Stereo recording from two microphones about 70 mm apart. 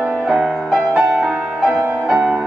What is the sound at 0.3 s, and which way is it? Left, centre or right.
Music, centre.